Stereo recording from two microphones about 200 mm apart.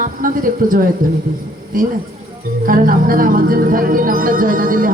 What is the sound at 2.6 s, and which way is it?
Speech, 45° right (ahead or behind).